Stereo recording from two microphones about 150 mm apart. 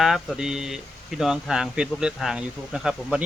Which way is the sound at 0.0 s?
5° right (ahead or behind).